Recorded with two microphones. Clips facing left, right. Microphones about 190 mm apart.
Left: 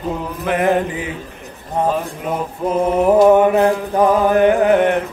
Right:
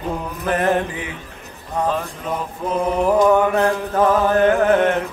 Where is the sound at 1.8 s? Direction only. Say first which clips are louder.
Left 3 dB; 25° left (ahead or behind).